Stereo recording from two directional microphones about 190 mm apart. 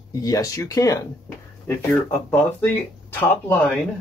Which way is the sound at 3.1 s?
10° left (ahead or behind).